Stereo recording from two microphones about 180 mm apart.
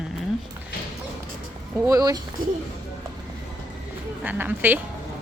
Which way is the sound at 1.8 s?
20° right (ahead or behind).